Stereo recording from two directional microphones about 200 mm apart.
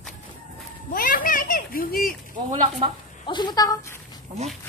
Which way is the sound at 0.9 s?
45° left (ahead or behind).